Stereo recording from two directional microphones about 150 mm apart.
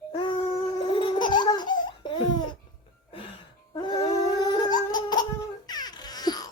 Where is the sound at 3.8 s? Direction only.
25° left (ahead or behind).